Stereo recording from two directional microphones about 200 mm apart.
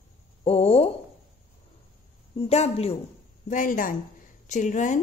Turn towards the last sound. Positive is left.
turn(degrees=40)  # may be behind; listen again after turning